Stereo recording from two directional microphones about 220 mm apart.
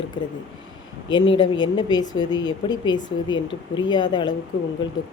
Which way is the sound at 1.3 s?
20° left (ahead or behind).